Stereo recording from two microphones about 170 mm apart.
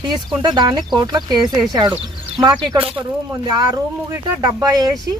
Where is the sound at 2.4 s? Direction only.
25° right (ahead or behind).